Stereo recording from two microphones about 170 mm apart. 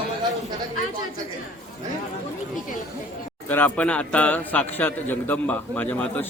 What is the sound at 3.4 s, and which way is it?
A man's voice, 10° left (ahead or behind).